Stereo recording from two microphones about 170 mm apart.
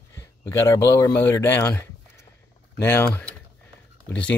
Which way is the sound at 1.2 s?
10° left (ahead or behind).